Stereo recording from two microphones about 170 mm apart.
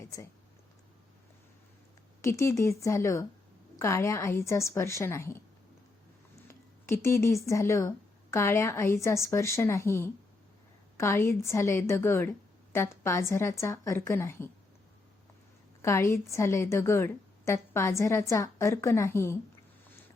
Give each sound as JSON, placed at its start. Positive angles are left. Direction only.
{"t": 2.2, "sound": "a woman's voice", "side_deg": 15}
{"t": 6.5, "sound": "a woman's voice", "side_deg": 15}
{"t": 15.8, "sound": "a woman's voice", "side_deg": 15}